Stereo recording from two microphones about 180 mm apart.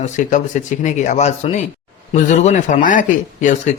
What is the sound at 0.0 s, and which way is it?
Speech, 45° left (ahead or behind).